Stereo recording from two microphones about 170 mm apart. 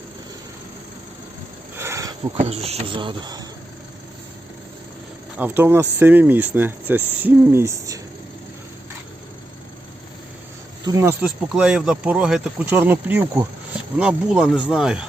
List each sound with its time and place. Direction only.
1.7 s a sound: 15° right (ahead or behind)
2.3 s speech: 35° right (ahead or behind)
5.4 s speech: 10° right (ahead or behind)
11.2 s speech: 5° right (ahead or behind)